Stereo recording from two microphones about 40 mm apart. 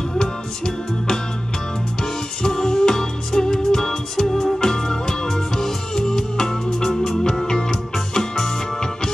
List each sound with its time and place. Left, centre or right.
0.2 s music: centre
2.4 s music: centre